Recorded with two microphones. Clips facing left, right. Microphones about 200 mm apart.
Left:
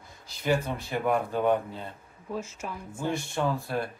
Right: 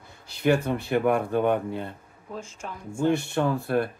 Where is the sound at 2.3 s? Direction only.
5° left (ahead or behind).